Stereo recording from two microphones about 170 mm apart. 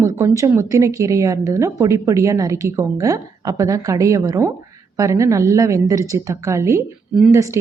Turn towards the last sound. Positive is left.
turn(degrees=-15)  # may be behind; listen again after turning